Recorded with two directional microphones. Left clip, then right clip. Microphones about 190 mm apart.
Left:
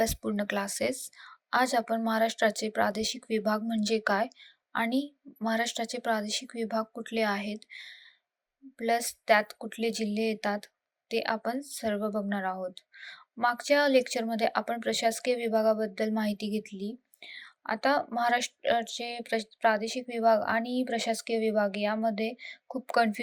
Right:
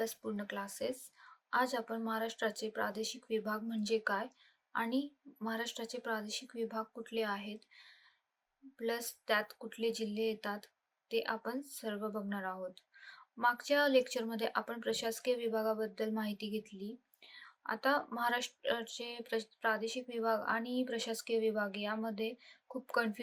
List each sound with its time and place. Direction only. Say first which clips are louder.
0.0 s speech: left 10 dB; 35° left (ahead or behind)